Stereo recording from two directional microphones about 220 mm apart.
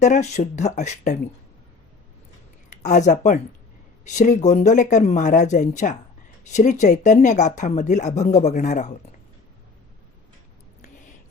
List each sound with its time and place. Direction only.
0.0 s speech: 30° left (ahead or behind)
2.6 s speech: 35° left (ahead or behind)